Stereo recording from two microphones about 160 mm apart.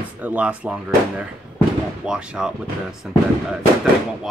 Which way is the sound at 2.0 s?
5° right (ahead or behind).